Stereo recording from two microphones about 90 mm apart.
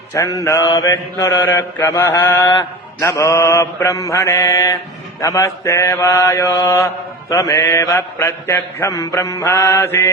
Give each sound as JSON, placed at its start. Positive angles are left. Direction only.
{"t": 0.1, "sound": "mantra", "side_deg": 40}
{"t": 3.0, "sound": "mantra", "side_deg": 35}